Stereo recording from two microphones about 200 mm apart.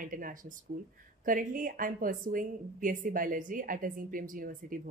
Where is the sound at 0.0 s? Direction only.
45° right (ahead or behind).